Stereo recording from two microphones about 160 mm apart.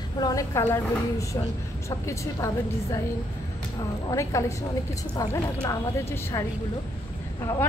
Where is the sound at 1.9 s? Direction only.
20° left (ahead or behind).